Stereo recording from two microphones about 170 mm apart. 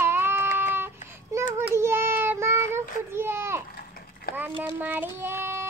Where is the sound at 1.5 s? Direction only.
15° right (ahead or behind).